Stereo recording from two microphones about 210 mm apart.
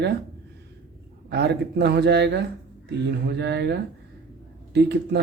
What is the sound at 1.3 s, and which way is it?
Speech, 50° right (ahead or behind).